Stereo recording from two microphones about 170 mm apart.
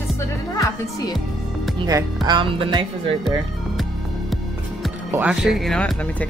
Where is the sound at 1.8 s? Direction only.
25° right (ahead or behind).